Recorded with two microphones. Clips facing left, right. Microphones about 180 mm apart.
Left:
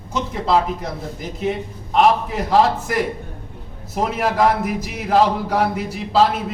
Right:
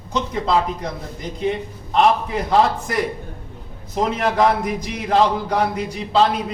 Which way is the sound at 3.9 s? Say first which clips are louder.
Even; 5° left (ahead or behind).